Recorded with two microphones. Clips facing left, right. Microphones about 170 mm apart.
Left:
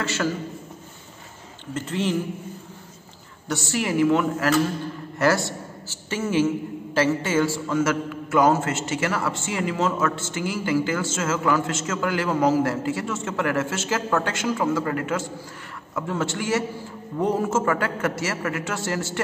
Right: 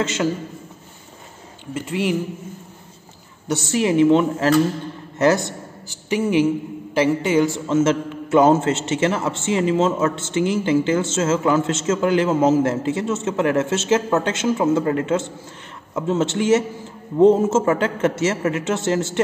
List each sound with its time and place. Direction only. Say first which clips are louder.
0.0 s a man's voice: right 4 dB; 20° right (ahead or behind)
1.7 s a man's voice: right 3 dB; 10° right (ahead or behind)
3.4 s a man's voice: right 6 dB; 20° right (ahead or behind)